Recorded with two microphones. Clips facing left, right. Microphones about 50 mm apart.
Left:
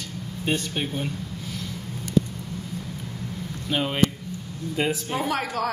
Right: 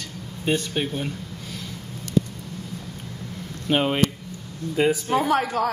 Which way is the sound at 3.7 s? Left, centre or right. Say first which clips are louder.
Right 5 dB; right.